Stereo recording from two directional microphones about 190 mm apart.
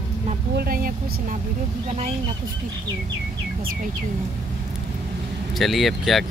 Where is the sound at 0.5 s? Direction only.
50° right (ahead or behind).